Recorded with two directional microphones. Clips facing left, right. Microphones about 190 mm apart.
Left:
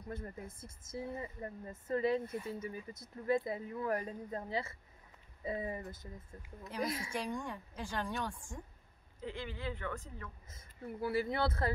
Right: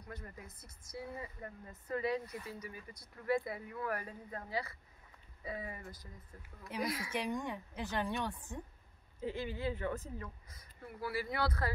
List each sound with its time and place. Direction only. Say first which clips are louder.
0.0 s speech: left 5 dB; 30° left (ahead or behind)
7.2 s a woman's voice: right 1 dB; 10° right (ahead or behind)
10.5 s speech: left 5 dB; 25° left (ahead or behind)